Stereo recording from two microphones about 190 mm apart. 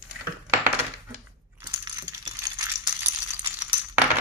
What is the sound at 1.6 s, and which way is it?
Rattle, 20° right (ahead or behind).